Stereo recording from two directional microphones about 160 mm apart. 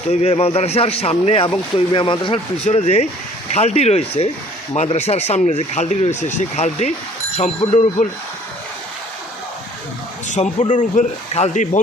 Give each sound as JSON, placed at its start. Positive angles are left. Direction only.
{"t": 0.1, "sound": "a man's voice", "side_deg": 40}
{"t": 2.6, "sound": "a man's voice", "side_deg": 45}
{"t": 10.2, "sound": "speech", "side_deg": 50}